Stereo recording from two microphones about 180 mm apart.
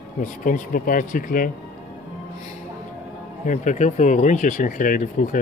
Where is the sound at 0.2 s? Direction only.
50° left (ahead or behind).